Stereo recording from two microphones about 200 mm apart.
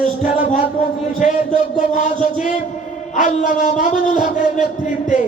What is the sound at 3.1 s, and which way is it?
A man's voice, 40° left (ahead or behind).